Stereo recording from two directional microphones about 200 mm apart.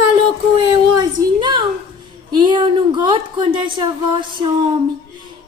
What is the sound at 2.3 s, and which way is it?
Speech, 25° right (ahead or behind).